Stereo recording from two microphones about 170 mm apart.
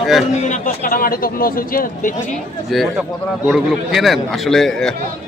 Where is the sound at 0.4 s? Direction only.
50° left (ahead or behind).